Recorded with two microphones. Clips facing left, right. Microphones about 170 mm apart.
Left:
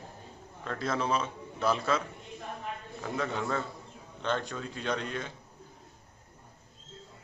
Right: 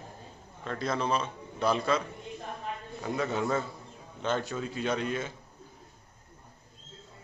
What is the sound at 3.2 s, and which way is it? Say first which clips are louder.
A man's voice: right 3 dB; 5° right (ahead or behind).